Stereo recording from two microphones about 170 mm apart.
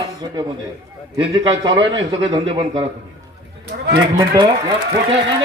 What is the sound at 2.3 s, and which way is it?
Speech, 25° right (ahead or behind).